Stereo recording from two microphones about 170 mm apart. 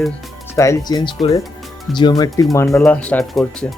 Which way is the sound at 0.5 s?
20° left (ahead or behind).